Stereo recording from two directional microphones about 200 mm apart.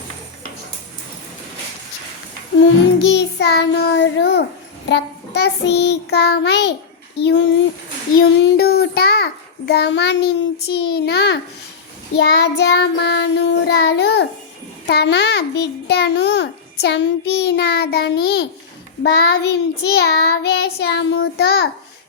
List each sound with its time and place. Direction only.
2.6 s a child's voice: 65° left (ahead or behind)
8.2 s a child's voice: 50° left (ahead or behind)